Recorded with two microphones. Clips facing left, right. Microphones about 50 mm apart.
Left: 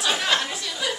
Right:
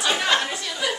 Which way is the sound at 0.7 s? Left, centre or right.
Centre.